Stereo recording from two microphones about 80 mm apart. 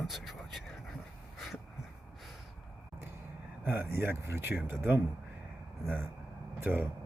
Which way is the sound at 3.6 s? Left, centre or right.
Right.